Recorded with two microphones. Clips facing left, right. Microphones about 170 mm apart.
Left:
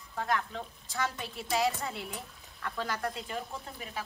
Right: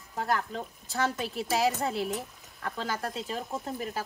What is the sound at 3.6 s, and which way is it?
Speech, 45° right (ahead or behind).